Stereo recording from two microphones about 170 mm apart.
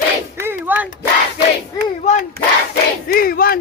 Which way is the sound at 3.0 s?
60° left (ahead or behind).